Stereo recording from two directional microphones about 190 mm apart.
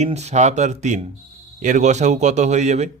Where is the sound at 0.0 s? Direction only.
35° right (ahead or behind).